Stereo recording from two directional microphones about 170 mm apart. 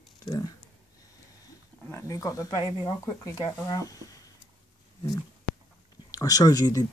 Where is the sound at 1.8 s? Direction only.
15° left (ahead or behind).